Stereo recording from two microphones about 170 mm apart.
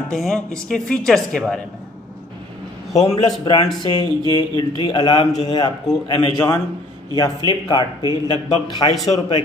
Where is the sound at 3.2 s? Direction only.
25° left (ahead or behind).